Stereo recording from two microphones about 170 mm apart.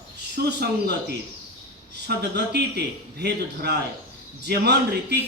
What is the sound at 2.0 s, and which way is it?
Speech, 80° right.